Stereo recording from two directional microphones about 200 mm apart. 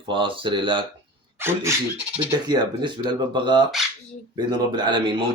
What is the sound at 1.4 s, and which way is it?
Speech, 10° right (ahead or behind).